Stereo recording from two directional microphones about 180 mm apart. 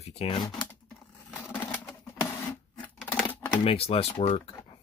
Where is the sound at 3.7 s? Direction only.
35° left (ahead or behind).